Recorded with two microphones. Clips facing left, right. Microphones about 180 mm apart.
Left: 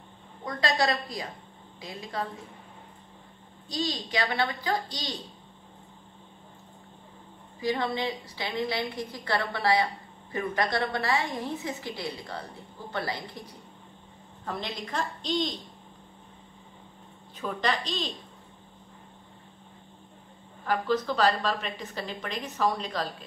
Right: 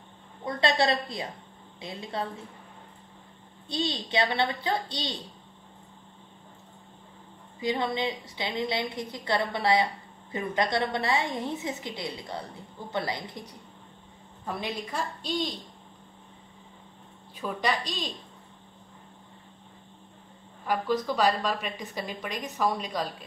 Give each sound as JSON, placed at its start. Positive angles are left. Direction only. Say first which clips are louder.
{"t": 0.5, "sound": "a woman's voice", "louder": "right 2 dB", "side_deg": -20}
{"t": 4.1, "sound": "a woman's voice", "louder": "right 3 dB", "side_deg": -20}
{"t": 7.6, "sound": "a woman's voice", "louder": "even", "side_deg": -20}
{"t": 14.4, "sound": "a woman's voice", "louder": "right 2 dB", "side_deg": -15}
{"t": 17.4, "sound": "a woman's voice", "louder": "even", "side_deg": -10}
{"t": 20.6, "sound": "a woman's voice", "louder": "even", "side_deg": -15}